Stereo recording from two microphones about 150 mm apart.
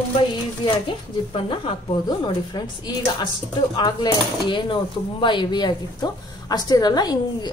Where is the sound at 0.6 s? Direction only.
35° left (ahead or behind).